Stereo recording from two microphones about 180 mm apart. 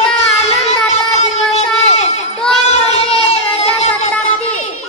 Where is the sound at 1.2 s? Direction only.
40° left (ahead or behind).